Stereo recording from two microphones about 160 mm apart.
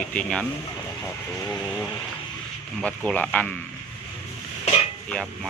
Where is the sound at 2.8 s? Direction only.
5° left (ahead or behind).